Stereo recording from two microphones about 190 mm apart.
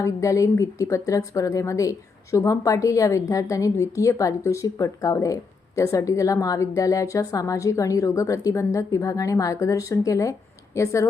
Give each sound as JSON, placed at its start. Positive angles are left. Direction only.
{"t": 0.0, "sound": "a woman's voice", "side_deg": 15}